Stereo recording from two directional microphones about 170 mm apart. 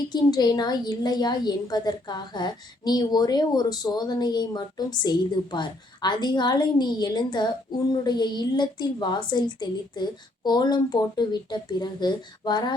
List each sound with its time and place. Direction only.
0.1 s a woman's voice: 25° left (ahead or behind)